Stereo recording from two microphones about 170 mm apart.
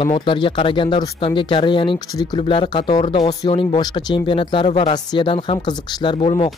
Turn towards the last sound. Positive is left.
turn(degrees=35)  # may be behind; listen again after turning